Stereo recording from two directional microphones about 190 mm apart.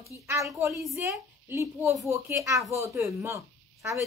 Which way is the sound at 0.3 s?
15° right (ahead or behind).